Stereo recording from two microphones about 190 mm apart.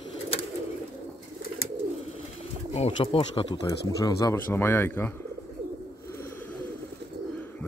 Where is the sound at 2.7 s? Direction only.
30° left (ahead or behind); by 5.1 s 10° left (ahead or behind).